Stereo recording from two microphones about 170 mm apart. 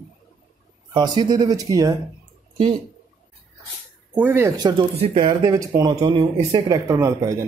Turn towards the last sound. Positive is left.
turn(degrees=-20)  # may be behind; listen again after turning